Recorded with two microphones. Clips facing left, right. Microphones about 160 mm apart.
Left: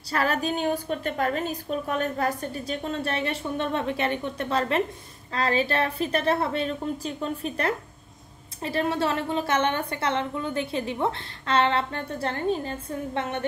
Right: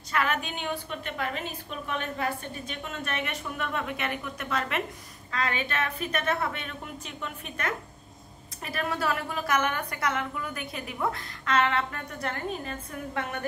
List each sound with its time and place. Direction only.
0.1 s a woman's voice: 35° left (ahead or behind)